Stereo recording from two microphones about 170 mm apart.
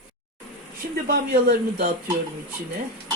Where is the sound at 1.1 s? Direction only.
60° right (ahead or behind).